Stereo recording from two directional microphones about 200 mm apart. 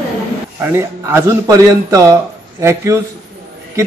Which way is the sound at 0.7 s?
15° right (ahead or behind).